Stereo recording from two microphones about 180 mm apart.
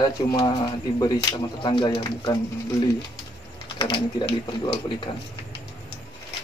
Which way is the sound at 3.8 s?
25° left (ahead or behind).